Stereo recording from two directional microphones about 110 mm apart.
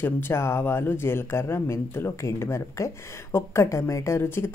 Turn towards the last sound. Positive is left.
turn(degrees=25)  # may be behind; listen again after turning